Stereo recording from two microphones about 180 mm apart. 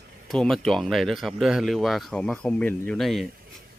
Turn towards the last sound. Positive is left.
turn(degrees=0)  # may be behind; listen again after turning